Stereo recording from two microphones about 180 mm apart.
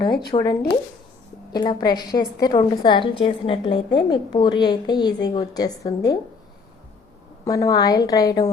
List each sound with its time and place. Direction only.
0.3 s a woman's voice: 25° left (ahead or behind)
1.5 s a woman's voice: 20° left (ahead or behind)
7.4 s a woman's voice: 20° left (ahead or behind)